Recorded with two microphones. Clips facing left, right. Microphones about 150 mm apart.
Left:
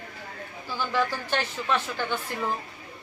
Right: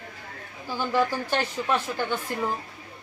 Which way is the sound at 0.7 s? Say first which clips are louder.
Right 3 dB; 15° right (ahead or behind).